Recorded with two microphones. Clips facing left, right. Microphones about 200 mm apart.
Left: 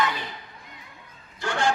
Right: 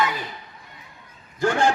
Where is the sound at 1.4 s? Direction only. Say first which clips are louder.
Right 6 dB; 45° right (ahead or behind).